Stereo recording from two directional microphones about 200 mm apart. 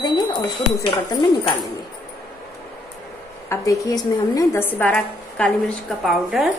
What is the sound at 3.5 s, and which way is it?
A woman's voice, 15° left (ahead or behind).